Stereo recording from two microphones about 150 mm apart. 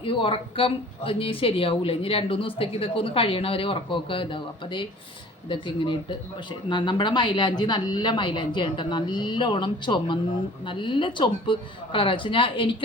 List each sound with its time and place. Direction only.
0.0 s speech: 35° left (ahead or behind)